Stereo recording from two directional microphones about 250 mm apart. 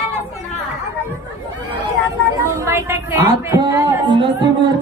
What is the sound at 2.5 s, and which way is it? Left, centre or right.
A woman's voice, centre.